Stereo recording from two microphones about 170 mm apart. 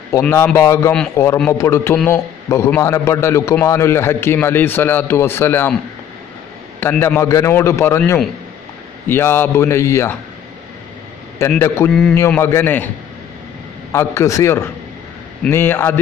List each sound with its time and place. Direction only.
0.2 s a man's voice: 10° left (ahead or behind)
6.8 s a man's voice: 10° left (ahead or behind)
11.3 s a man's voice: 15° left (ahead or behind)
13.9 s a man's voice: 15° left (ahead or behind)